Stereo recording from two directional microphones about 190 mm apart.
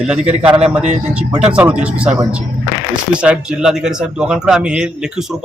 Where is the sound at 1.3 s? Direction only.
5° right (ahead or behind).